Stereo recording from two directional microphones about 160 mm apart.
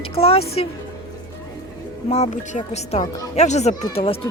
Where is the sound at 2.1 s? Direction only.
40° left (ahead or behind).